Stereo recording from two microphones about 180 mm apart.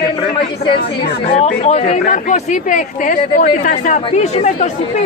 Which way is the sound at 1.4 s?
35° left (ahead or behind).